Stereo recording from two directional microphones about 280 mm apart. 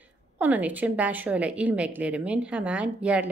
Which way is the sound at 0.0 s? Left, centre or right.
Centre.